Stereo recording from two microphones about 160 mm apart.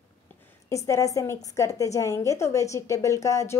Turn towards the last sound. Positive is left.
turn(degrees=20)  # may be behind; listen again after turning